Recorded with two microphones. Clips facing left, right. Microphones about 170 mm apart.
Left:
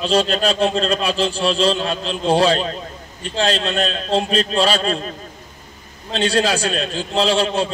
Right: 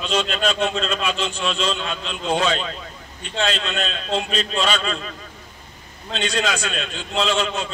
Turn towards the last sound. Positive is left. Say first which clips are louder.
# left 5 dB
turn(degrees=35)  # may be behind; listen again after turning